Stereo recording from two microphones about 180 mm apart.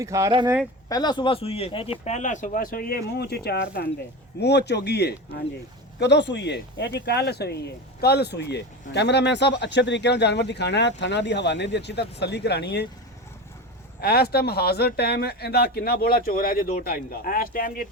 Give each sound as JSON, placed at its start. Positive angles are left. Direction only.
{"t": 0.0, "sound": "speech", "side_deg": -15}
{"t": 0.9, "sound": "speech", "side_deg": 20}
{"t": 14.0, "sound": "speech", "side_deg": 60}